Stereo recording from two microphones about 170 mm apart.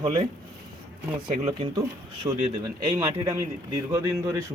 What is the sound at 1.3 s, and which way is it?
Speech, 35° right (ahead or behind).